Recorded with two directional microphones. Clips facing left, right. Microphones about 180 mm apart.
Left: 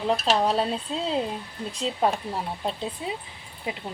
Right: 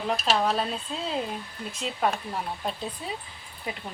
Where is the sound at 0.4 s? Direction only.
30° left (ahead or behind).